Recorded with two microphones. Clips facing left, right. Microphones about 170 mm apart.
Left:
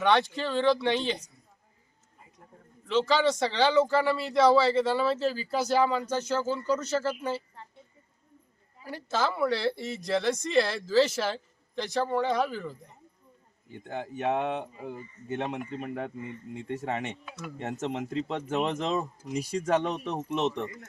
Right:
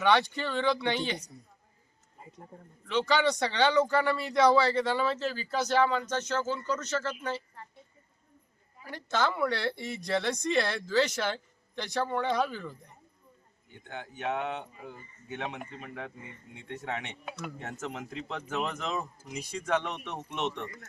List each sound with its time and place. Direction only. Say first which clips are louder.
0.0 s speech: left 1 dB; centre (ahead or behind)
2.8 s speech: left 2 dB; centre (ahead or behind)
8.8 s speech: left 1 dB; 10° left (ahead or behind)
13.8 s speech: left 5 dB; 30° left (ahead or behind)
15.3 s speech: left 5 dB; 40° left (ahead or behind)
17.6 s speech: left 6 dB; 30° left (ahead or behind)